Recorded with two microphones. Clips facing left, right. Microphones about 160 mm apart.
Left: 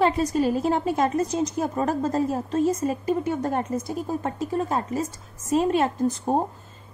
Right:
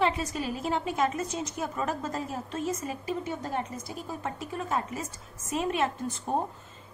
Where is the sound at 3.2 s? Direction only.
50° left (ahead or behind).